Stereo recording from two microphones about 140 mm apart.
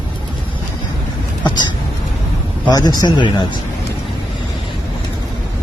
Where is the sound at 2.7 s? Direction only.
30° left (ahead or behind).